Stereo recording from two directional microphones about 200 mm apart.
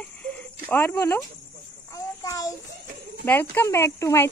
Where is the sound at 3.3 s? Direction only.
10° left (ahead or behind).